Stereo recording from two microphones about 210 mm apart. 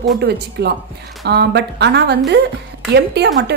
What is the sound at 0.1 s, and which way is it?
A woman's voice, 50° right (ahead or behind).